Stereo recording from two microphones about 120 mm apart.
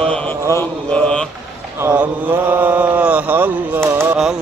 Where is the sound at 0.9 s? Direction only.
10° left (ahead or behind).